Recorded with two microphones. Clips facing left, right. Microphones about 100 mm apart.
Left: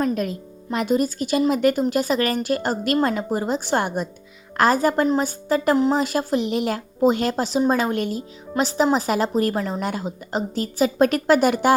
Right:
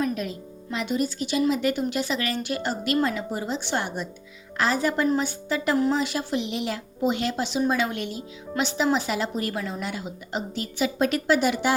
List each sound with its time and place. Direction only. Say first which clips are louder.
0.0 s a woman's voice: left 4 dB; 45° left (ahead or behind)